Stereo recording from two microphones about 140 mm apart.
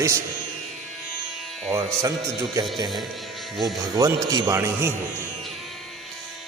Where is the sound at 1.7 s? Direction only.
30° right (ahead or behind).